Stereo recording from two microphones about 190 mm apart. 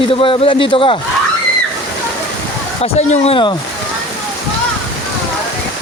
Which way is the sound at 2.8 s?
30° left (ahead or behind).